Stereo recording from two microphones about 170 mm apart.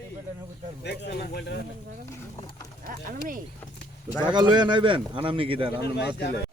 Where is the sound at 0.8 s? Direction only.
80° left.